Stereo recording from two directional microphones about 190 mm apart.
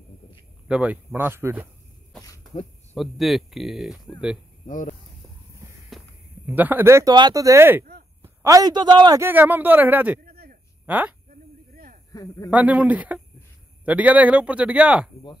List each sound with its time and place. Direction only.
0.7 s a man's voice: 5° right (ahead or behind)
2.9 s speech: centre (ahead or behind)
4.6 s speech: 45° left (ahead or behind)
5.9 s a sound: centre (ahead or behind)
6.4 s a man's voice: 10° right (ahead or behind)
10.2 s a sound: 55° right (ahead or behind)
10.9 s speech: 10° right (ahead or behind)
11.7 s a sound: 45° right (ahead or behind)
12.1 s speech: 20° left (ahead or behind)
12.4 s a man's voice: 5° right (ahead or behind)